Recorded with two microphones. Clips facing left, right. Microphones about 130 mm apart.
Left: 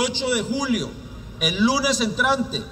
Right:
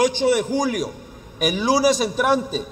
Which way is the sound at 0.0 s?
50° right (ahead or behind).